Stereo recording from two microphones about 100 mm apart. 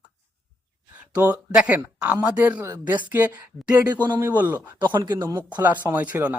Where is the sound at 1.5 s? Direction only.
15° right (ahead or behind).